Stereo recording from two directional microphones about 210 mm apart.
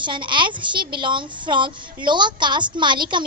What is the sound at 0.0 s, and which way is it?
A child's voice, 20° right (ahead or behind).